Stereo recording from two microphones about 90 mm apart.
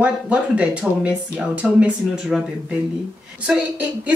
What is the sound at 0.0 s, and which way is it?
Speech, 15° right (ahead or behind).